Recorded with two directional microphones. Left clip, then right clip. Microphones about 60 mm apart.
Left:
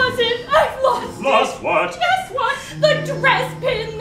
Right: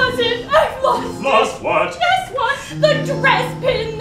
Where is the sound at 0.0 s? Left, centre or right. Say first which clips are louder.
Right 1 dB; right.